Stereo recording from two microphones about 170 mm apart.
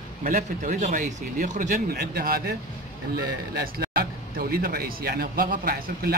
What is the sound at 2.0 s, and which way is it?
Speech, 60° right (ahead or behind).